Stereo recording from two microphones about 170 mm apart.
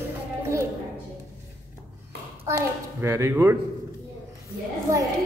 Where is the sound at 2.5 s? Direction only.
15° right (ahead or behind).